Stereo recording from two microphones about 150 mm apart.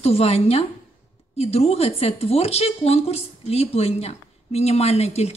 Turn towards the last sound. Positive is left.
turn(degrees=45)  # may be behind; listen again after turning